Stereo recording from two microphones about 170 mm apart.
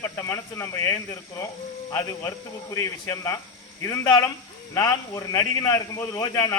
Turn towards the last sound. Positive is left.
turn(degrees=20)  # may be behind; listen again after turning